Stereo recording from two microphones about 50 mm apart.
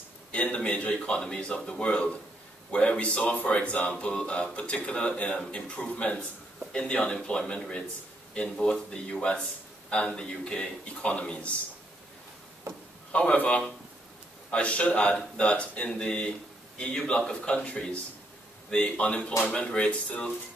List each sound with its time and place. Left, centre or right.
0.3 s a man's voice: left
3.9 s speech: centre
13.1 s speech: left